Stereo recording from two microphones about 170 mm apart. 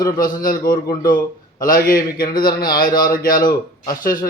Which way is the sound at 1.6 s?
55° left (ahead or behind).